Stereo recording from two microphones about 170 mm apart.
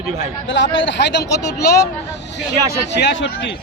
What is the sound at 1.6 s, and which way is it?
Speech, 65° left (ahead or behind).